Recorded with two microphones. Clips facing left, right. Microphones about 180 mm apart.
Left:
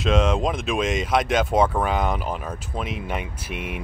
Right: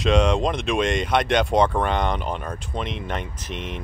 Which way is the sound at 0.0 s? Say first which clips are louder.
Right 1 dB; centre (ahead or behind).